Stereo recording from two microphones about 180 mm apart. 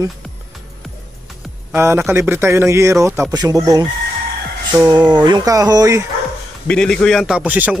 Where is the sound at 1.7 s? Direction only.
15° right (ahead or behind).